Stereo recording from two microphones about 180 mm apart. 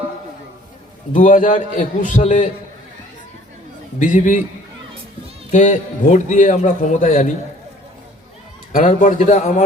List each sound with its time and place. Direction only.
1.1 s a man's voice: 45° left (ahead or behind)
4.0 s a man's voice: 45° left (ahead or behind)
5.5 s a man's voice: 40° left (ahead or behind)
8.7 s a man's voice: 45° left (ahead or behind)